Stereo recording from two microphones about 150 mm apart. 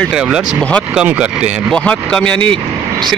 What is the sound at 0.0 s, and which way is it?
Speech, 5° right (ahead or behind).